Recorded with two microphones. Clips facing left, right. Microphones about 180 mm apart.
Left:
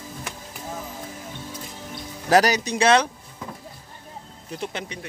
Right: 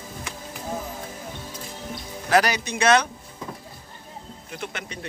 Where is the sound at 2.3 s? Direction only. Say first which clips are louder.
Left 3 dB; 40° left (ahead or behind).